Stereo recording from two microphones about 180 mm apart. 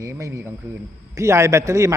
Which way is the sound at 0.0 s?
15° right (ahead or behind).